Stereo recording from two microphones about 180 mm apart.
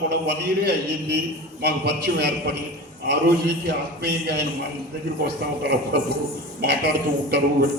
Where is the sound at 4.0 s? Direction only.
70° right (ahead or behind).